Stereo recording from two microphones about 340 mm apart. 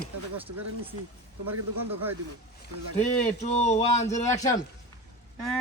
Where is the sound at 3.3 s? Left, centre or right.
Centre.